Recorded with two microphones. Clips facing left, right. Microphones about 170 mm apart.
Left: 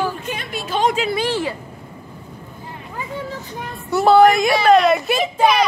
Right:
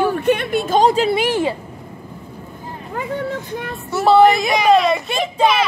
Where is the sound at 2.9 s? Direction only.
60° right (ahead or behind).